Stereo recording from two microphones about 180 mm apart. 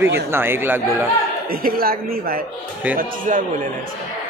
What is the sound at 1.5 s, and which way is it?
Speech, 55° right (ahead or behind).